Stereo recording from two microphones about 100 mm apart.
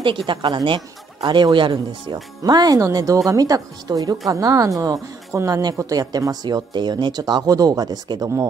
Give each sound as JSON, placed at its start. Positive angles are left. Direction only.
{"t": 0.0, "sound": "a woman's voice", "side_deg": -55}
{"t": 2.4, "sound": "speech", "side_deg": -40}